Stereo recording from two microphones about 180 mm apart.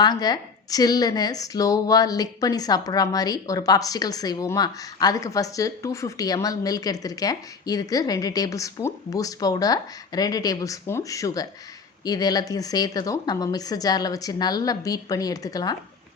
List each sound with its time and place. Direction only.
0.0 s a woman's voice: 20° left (ahead or behind)